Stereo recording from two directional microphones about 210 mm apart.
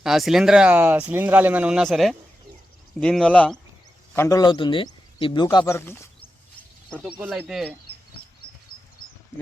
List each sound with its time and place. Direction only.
0.0 s speech: centre (ahead or behind)
7.2 s speech: 5° right (ahead or behind)